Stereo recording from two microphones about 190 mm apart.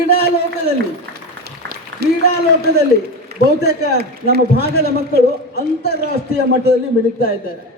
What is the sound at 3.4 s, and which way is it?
Speech, 55° left (ahead or behind).